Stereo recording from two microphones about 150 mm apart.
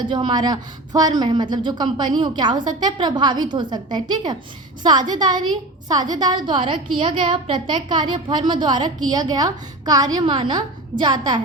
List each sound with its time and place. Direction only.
0.0 s a woman's voice: 35° right (ahead or behind)